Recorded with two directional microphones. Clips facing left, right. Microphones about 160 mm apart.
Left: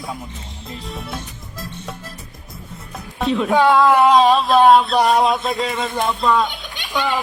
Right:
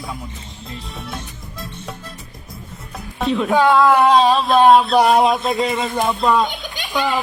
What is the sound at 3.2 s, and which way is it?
Speech, centre (ahead or behind).